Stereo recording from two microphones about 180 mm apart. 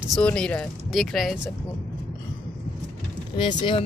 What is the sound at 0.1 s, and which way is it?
Speech, 5° left (ahead or behind).